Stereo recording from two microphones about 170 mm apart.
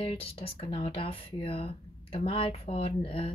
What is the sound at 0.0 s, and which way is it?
Speech, 35° left (ahead or behind).